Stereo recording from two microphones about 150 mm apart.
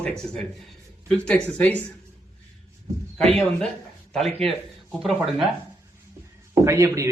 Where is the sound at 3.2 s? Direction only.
5° left (ahead or behind).